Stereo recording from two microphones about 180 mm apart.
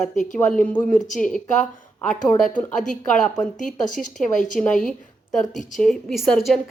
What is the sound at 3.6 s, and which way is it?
Speech, 45° left (ahead or behind).